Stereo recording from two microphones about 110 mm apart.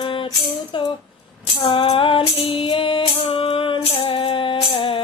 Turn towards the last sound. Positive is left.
turn(degrees=55)  # may be behind; listen again after turning